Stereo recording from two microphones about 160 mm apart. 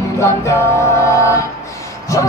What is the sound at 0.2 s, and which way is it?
Music, 15° left (ahead or behind).